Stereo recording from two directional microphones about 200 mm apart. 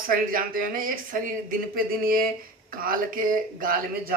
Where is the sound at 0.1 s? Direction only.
45° right (ahead or behind).